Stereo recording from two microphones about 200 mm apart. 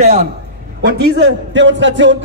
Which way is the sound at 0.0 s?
35° right (ahead or behind).